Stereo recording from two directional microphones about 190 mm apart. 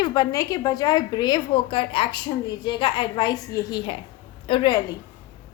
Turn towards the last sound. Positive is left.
turn(degrees=25)  # may be behind; listen again after turning